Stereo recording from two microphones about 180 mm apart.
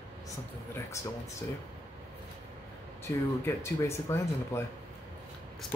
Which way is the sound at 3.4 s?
15° left (ahead or behind).